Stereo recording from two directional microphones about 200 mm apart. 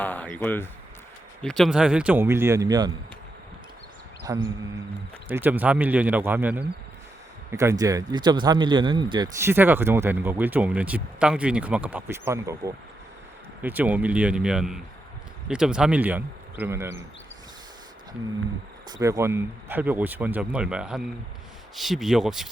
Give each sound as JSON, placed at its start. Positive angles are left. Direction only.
{"t": 0.0, "sound": "speech", "side_deg": 10}
{"t": 4.3, "sound": "speech", "side_deg": -15}
{"t": 18.9, "sound": "speech", "side_deg": -15}